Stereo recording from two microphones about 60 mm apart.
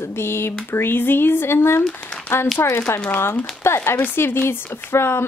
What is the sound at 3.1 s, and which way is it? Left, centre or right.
Speech, left.